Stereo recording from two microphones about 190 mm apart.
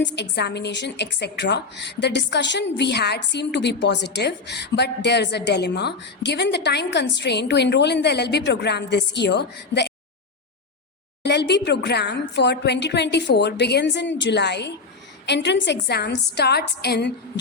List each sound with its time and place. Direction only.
0.0 s a woman's voice: 65° left (ahead or behind)
11.2 s a woman's voice: 65° left (ahead or behind)